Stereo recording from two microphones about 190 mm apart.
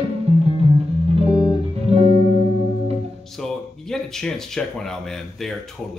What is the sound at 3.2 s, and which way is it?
Speech, centre (ahead or behind).